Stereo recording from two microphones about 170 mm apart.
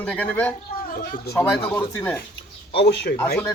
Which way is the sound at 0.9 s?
55° left (ahead or behind).